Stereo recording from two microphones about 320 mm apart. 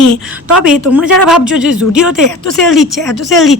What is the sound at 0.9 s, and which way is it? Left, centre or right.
A woman's voice, centre.